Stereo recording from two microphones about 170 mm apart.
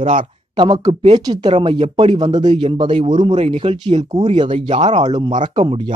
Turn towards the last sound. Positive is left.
turn(degrees=-30)  # may be behind; listen again after turning